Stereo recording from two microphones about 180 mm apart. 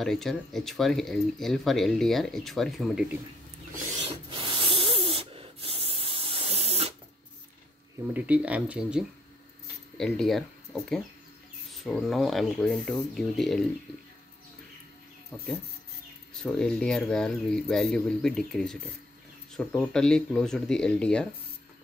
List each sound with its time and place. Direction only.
0.0 s speech: centre (ahead or behind)
4.1 s sanding: 30° right (ahead or behind)
8.1 s speech: 5° right (ahead or behind)
16.4 s speech: 5° left (ahead or behind)
19.8 s speech: 5° left (ahead or behind)